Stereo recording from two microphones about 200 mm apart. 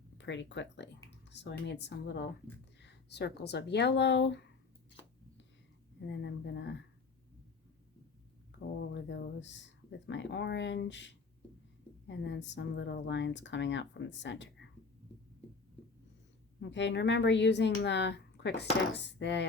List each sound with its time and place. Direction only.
0.2 s speech: 65° left (ahead or behind)
6.0 s speech: 60° left (ahead or behind)
8.8 s speech: 60° left (ahead or behind)
16.6 s speech: 65° left (ahead or behind)